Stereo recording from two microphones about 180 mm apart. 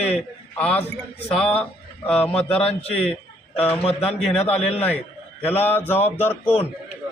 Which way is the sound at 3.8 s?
35° left (ahead or behind).